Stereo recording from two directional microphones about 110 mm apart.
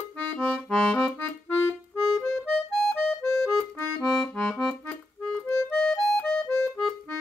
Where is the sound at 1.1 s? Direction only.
25° left (ahead or behind).